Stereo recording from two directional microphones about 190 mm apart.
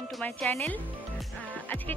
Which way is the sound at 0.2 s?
10° left (ahead or behind).